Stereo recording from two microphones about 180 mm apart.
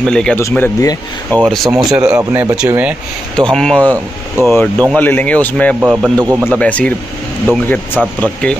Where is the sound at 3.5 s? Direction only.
5° left (ahead or behind).